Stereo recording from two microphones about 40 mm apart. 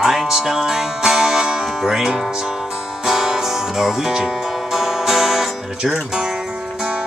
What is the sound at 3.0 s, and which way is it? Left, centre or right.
Music, centre.